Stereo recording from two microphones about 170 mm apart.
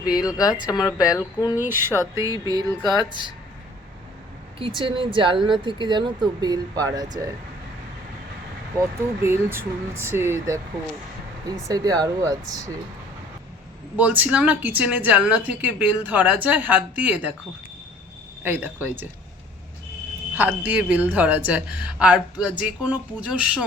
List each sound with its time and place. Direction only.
0.1 s speech: 20° left (ahead or behind)
1.5 s a woman's voice: 15° right (ahead or behind)
4.6 s speech: 30° right (ahead or behind)
8.8 s a woman's voice: 15° right (ahead or behind)
11.7 s speech: 20° right (ahead or behind)
13.9 s a woman's voice: 10° right (ahead or behind)
18.4 s a woman's voice: 10° right (ahead or behind)
20.3 s a woman's voice: 10° right (ahead or behind)